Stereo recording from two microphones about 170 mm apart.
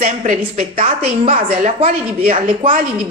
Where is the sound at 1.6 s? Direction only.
50° right (ahead or behind).